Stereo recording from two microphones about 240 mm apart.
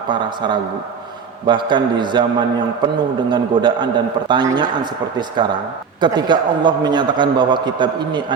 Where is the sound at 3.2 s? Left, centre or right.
Centre.